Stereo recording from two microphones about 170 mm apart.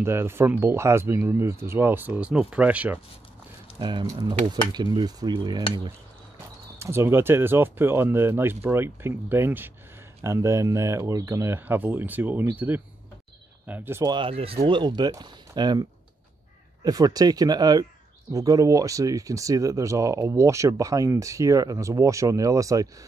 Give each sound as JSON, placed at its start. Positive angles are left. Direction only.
{"t": 0.0, "sound": "speech", "side_deg": -15}
{"t": 3.8, "sound": "speech", "side_deg": -25}
{"t": 6.8, "sound": "speech", "side_deg": -15}
{"t": 14.1, "sound": "speech", "side_deg": -30}